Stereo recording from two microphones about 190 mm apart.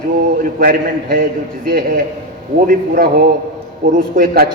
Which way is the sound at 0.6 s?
45° right (ahead or behind).